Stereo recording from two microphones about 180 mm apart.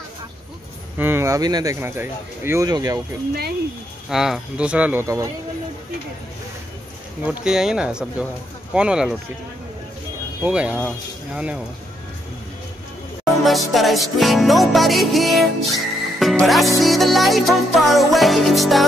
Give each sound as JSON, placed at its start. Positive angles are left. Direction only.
{"t": 0.9, "sound": "speech", "side_deg": -10}
{"t": 4.1, "sound": "speech", "side_deg": 0}
{"t": 7.2, "sound": "music", "side_deg": -5}
{"t": 10.4, "sound": "speech", "side_deg": -5}
{"t": 11.3, "sound": "music", "side_deg": -5}
{"t": 13.2, "sound": "music", "side_deg": 0}